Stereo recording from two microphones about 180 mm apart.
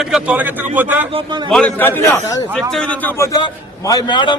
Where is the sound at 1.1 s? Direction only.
30° right (ahead or behind).